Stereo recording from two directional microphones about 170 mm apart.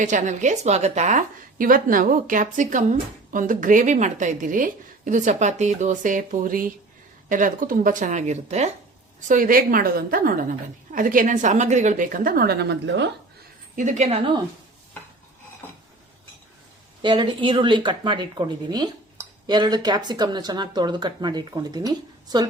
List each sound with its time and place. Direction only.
0.0 s a woman's voice: 45° right (ahead or behind)
9.2 s a woman's voice: 50° right (ahead or behind); by 13.1 s 90° right
13.7 s a woman's voice: 45° right (ahead or behind)
17.0 s speech: 25° right (ahead or behind)